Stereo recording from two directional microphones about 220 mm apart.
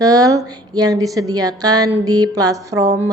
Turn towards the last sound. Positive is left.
turn(degrees=-15)  # may be behind; listen again after turning